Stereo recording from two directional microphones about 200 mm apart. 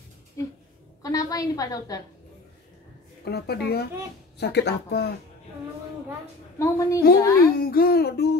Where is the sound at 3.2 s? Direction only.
55° left (ahead or behind).